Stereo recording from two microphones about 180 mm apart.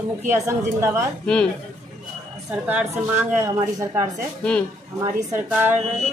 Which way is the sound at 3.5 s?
20° right (ahead or behind).